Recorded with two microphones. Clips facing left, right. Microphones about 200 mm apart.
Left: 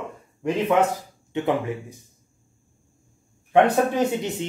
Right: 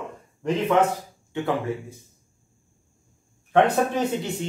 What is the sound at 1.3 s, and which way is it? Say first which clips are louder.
Speech: left 2 dB; 20° left (ahead or behind).